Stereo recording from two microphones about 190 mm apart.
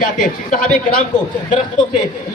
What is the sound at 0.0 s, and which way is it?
Speech, 45° left (ahead or behind).